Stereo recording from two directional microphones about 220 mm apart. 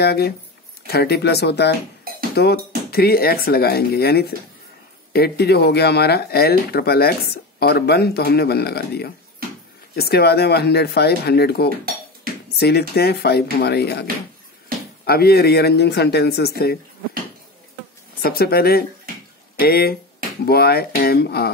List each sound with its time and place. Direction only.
0.0 s speech: 45° left (ahead or behind)
15.0 s speech: 45° left (ahead or behind)
18.2 s speech: 45° left (ahead or behind)